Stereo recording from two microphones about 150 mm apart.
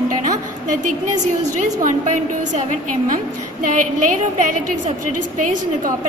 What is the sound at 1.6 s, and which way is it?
A woman's voice, 55° right (ahead or behind).